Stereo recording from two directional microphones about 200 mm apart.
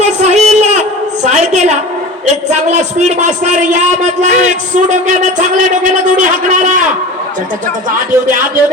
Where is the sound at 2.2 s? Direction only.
35° right (ahead or behind).